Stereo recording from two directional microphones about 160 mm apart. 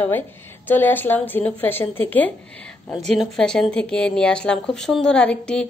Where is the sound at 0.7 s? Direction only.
10° left (ahead or behind).